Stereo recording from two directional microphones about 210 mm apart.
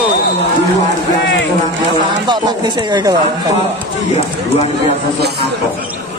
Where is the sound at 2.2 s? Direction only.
20° right (ahead or behind).